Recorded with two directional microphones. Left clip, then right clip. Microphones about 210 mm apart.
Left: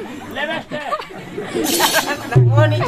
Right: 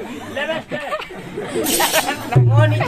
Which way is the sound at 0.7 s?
5° right (ahead or behind).